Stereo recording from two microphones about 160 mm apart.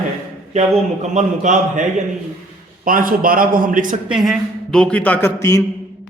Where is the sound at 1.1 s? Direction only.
50° right (ahead or behind).